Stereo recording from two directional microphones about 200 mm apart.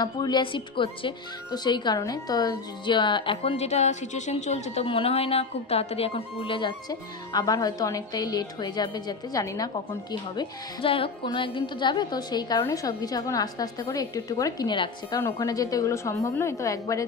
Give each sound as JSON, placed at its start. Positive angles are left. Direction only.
{"t": 0.0, "sound": "a woman's voice", "side_deg": 20}